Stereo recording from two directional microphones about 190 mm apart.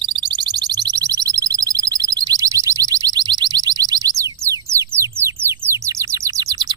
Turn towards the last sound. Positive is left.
turn(degrees=-15)  # may be behind; listen again after turning